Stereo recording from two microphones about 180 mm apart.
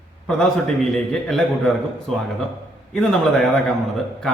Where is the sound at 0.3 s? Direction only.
Centre (ahead or behind).